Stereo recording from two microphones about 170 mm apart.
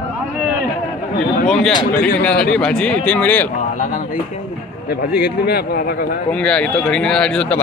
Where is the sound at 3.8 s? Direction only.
50° left (ahead or behind).